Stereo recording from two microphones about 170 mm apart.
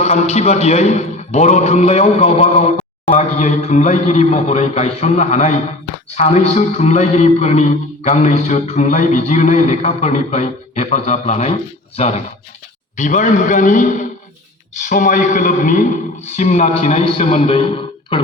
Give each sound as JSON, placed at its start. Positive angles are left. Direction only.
{"t": 0.0, "sound": "a man's voice", "side_deg": 40}
{"t": 13.0, "sound": "a man's voice", "side_deg": 50}